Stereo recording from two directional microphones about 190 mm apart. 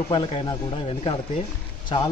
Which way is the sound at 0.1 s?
25° left (ahead or behind).